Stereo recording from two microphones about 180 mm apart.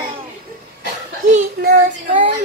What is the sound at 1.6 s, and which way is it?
Child singing, 50° right (ahead or behind).